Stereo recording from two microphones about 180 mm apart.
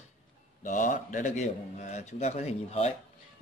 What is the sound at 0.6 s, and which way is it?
A man's voice, 45° left (ahead or behind).